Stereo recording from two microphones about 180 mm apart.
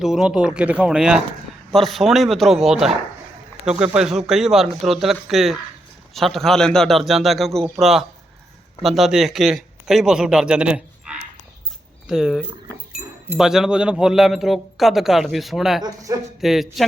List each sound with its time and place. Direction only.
0.0 s speech: 5° right (ahead or behind)
15.8 s speech: 20° right (ahead or behind)
16.4 s speech: centre (ahead or behind)